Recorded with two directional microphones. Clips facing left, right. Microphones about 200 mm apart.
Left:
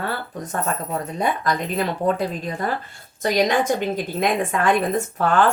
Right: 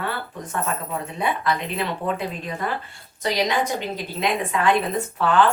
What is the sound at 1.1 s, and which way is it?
A woman's voice, 45° left (ahead or behind).